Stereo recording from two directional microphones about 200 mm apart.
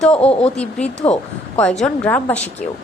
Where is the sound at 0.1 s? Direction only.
30° left (ahead or behind).